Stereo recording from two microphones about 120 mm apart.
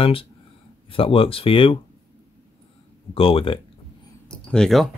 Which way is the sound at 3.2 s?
50° left (ahead or behind).